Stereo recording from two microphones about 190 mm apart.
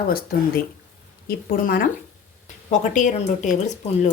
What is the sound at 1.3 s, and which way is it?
A woman's voice, 50° left (ahead or behind).